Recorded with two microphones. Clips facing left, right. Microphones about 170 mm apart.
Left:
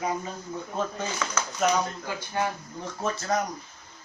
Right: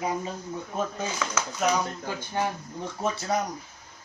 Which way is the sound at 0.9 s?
10° right (ahead or behind).